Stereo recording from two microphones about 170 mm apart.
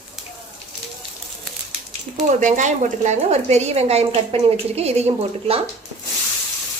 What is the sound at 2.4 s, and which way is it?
A woman's voice, 45° right (ahead or behind).